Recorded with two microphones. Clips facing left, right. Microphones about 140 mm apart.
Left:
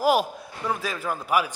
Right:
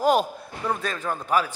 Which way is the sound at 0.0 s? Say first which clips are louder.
Right 1 dB; 5° left (ahead or behind).